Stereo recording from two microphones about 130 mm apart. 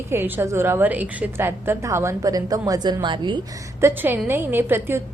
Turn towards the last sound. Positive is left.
turn(degrees=-20)  # may be behind; listen again after turning